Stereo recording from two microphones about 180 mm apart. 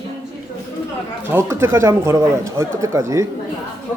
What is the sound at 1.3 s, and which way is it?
Speech, 15° right (ahead or behind).